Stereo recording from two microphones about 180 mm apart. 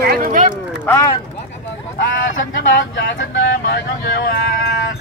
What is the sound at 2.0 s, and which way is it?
Speech, 90° left.